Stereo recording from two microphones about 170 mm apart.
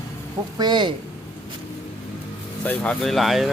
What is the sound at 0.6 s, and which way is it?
Speech, 25° right (ahead or behind).